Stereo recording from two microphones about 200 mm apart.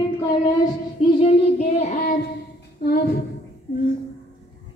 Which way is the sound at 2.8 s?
50° left (ahead or behind).